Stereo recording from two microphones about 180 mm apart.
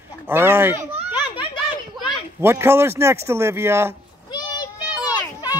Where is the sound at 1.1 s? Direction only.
25° left (ahead or behind).